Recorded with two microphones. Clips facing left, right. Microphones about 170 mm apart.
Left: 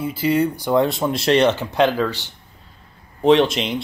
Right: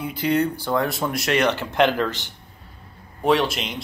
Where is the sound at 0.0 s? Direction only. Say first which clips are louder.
Left 3 dB; 5° left (ahead or behind).